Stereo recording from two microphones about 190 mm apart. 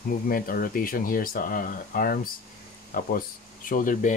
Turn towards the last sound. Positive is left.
turn(degrees=45)  # may be behind; listen again after turning